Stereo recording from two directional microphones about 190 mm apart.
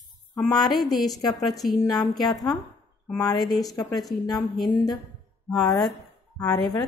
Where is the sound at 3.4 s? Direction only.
Centre (ahead or behind).